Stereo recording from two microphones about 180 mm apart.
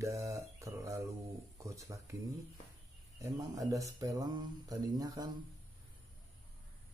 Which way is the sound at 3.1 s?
20° right (ahead or behind).